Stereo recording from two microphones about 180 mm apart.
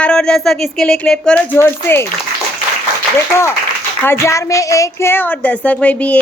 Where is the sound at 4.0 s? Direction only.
15° left (ahead or behind).